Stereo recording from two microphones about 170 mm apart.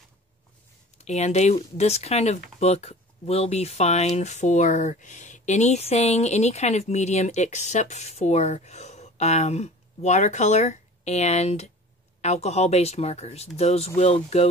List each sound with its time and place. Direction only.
0.9 s speech: 40° left (ahead or behind)